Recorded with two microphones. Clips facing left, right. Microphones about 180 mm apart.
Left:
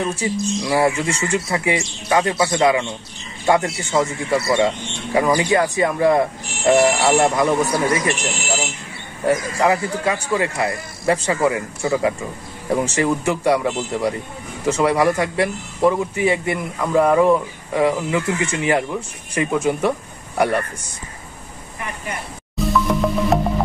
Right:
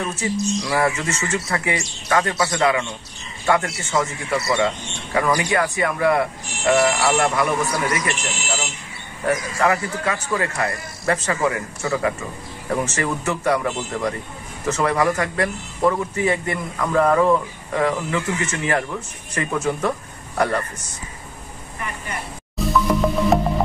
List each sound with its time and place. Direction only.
0.6 s a man's voice: 20° left (ahead or behind)
1.6 s a man's voice: 25° left (ahead or behind)
9.2 s a man's voice: 15° left (ahead or behind)
22.6 s music: centre (ahead or behind)